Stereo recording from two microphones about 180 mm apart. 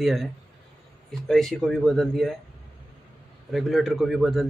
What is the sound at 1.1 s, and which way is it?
Speech, centre (ahead or behind).